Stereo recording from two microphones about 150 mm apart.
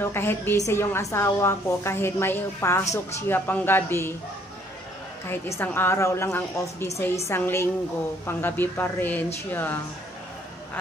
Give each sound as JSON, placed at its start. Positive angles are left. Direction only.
{"t": 0.0, "sound": "a woman's voice", "side_deg": 15}
{"t": 5.3, "sound": "a woman's voice", "side_deg": 15}